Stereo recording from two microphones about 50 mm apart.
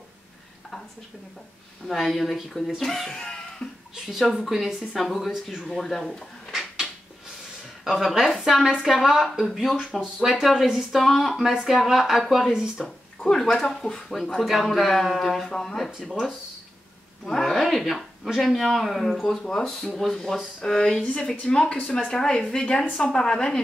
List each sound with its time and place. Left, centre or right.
1.9 s speech: centre
3.9 s speech: centre
5.6 s speech: centre
7.8 s a woman's voice: centre
13.2 s a woman's voice: centre